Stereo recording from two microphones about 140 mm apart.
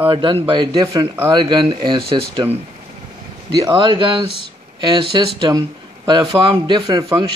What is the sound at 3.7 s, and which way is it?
Speech, 35° right (ahead or behind).